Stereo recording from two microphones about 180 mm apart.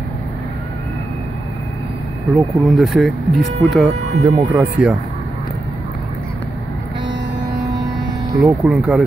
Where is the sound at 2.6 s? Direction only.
Centre (ahead or behind).